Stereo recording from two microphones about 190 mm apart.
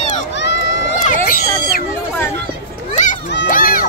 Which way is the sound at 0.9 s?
45° left (ahead or behind).